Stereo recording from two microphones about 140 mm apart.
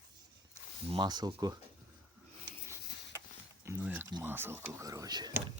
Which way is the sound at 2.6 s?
20° right (ahead or behind).